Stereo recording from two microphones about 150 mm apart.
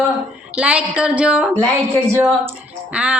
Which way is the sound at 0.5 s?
5° right (ahead or behind).